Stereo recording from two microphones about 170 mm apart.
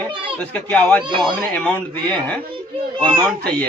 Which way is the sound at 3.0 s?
25° right (ahead or behind).